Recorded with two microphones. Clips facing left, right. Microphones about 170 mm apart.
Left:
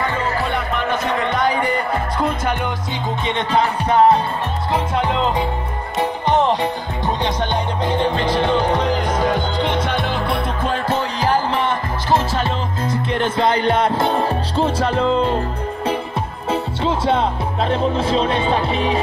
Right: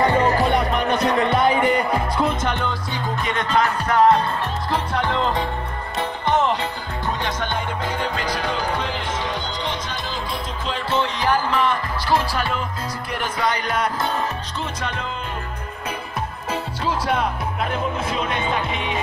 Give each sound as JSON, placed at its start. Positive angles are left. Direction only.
{"t": 0.0, "sound": "music", "side_deg": -40}
{"t": 3.3, "sound": "music", "side_deg": 25}
{"t": 7.8, "sound": "music", "side_deg": 20}
{"t": 9.1, "sound": "music", "side_deg": 50}
{"t": 11.2, "sound": "music", "side_deg": 25}
{"t": 16.4, "sound": "music", "side_deg": 25}